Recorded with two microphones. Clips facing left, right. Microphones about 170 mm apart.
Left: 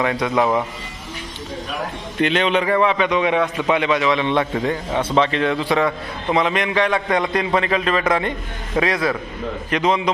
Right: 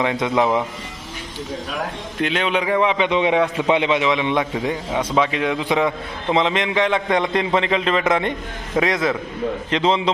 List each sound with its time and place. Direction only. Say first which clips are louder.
0.0 s a man's voice: even; 20° right (ahead or behind)
2.1 s a man's voice: left 3 dB; 5° right (ahead or behind); by 10.0 s 25° right (ahead or behind)